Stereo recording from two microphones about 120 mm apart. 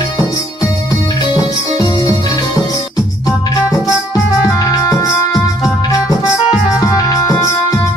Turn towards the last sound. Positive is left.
turn(degrees=30)  # may be behind; listen again after turning